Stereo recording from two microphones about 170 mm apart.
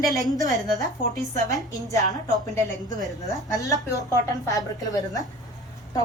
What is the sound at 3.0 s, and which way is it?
A woman's voice, 20° left (ahead or behind).